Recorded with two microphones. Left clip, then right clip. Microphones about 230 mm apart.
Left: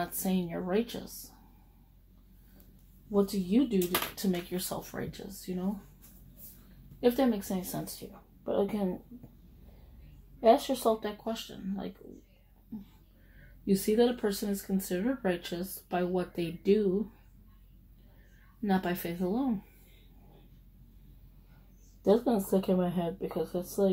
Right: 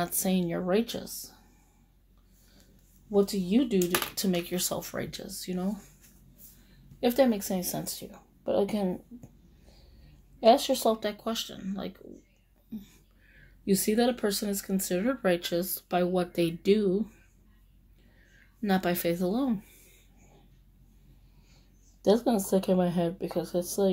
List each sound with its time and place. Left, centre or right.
0.0 s speech: right
3.1 s speech: right
7.0 s speech: right
10.4 s speech: right
13.7 s speech: right
18.6 s speech: right
22.0 s speech: right